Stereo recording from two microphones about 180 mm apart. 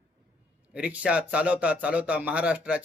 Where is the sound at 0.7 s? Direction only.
5° right (ahead or behind).